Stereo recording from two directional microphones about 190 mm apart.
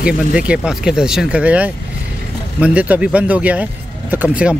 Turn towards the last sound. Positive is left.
turn(degrees=-10)  # may be behind; listen again after turning